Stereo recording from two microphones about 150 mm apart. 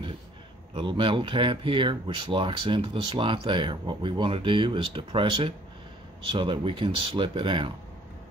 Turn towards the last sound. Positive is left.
turn(degrees=-35)  # may be behind; listen again after turning